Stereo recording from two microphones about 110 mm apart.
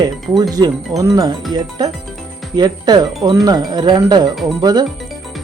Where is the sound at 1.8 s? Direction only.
40° right (ahead or behind).